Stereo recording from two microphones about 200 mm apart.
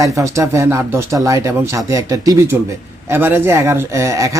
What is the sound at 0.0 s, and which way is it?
Speech, 15° right (ahead or behind).